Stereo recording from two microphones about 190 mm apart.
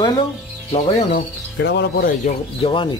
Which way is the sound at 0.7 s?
35° left (ahead or behind).